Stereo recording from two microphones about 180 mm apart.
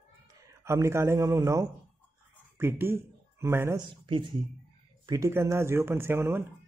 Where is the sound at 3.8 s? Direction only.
25° right (ahead or behind).